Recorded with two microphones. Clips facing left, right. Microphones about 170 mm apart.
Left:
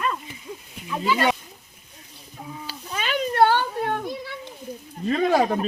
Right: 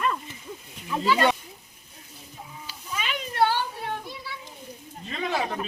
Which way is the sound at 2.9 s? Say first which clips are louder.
Left 7 dB; 45° left (ahead or behind).